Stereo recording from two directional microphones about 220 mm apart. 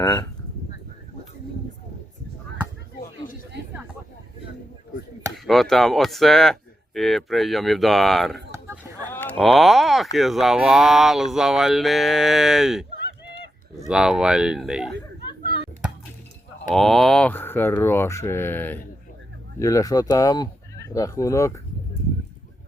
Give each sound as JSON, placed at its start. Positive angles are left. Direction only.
{"t": 0.0, "sound": "speech", "side_deg": 20}
{"t": 5.5, "sound": "speech", "side_deg": 0}
{"t": 8.6, "sound": "a sound", "side_deg": -10}
{"t": 9.1, "sound": "speech", "side_deg": 5}
{"t": 13.8, "sound": "speech", "side_deg": -5}
{"t": 16.6, "sound": "speech", "side_deg": 0}